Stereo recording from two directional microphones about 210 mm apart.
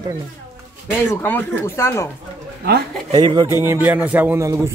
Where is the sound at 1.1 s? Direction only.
10° left (ahead or behind).